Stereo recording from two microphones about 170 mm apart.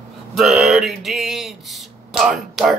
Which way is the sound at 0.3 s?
Centre (ahead or behind).